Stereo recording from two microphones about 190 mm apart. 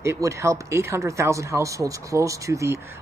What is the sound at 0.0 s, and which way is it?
Speech, 15° right (ahead or behind).